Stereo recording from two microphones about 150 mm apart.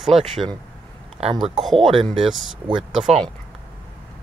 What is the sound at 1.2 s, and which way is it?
Speech, 45° right (ahead or behind).